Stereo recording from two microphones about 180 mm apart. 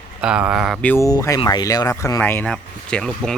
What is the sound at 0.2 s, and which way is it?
Speech, 5° right (ahead or behind).